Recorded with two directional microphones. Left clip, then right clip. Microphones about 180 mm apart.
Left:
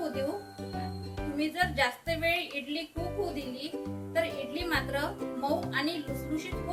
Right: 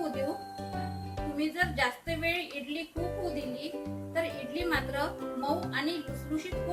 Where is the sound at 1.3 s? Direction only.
10° left (ahead or behind).